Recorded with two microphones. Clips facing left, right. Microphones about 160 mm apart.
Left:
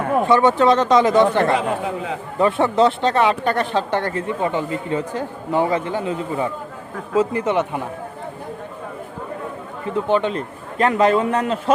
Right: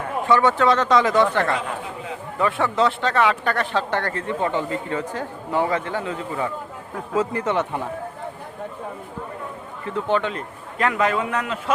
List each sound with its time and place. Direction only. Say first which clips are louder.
0.3 s speech: left 2 dB; 20° left (ahead or behind)
9.8 s speech: left 3 dB; 15° left (ahead or behind); by 11.7 s 35° left (ahead or behind)